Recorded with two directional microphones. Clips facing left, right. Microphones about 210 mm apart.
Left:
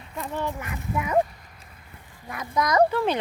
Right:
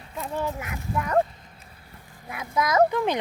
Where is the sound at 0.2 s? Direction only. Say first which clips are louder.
Right 1 dB; 5° right (ahead or behind).